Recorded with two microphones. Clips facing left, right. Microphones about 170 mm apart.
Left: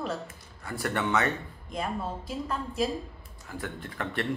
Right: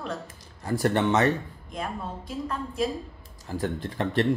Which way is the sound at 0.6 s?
35° right (ahead or behind).